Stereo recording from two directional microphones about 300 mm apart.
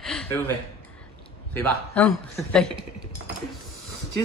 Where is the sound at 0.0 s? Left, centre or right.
Centre.